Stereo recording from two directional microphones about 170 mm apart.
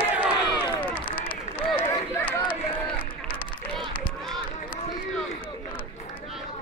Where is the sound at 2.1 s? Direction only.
10° left (ahead or behind).